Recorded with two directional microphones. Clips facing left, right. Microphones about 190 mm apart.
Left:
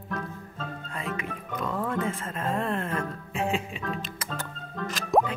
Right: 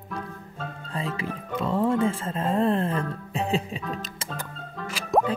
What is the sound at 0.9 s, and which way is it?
Speech, 30° right (ahead or behind).